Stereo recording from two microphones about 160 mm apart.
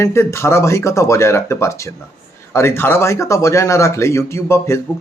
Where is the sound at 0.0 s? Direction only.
15° left (ahead or behind).